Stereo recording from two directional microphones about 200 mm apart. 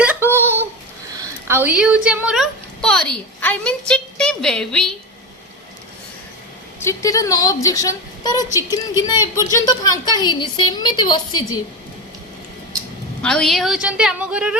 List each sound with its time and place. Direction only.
0.0 s a sound: 10° right (ahead or behind)
1.2 s a woman's voice: 10° right (ahead or behind)
6.7 s a woman's voice: 15° left (ahead or behind)
13.2 s a woman's voice: 5° left (ahead or behind)